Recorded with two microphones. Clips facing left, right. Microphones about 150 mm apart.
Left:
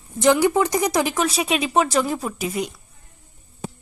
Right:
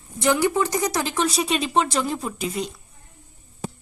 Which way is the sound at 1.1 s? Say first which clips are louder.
Left 1 dB; 5° left (ahead or behind).